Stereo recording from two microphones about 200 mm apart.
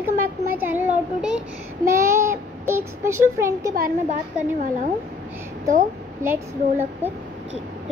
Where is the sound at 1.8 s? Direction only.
15° right (ahead or behind).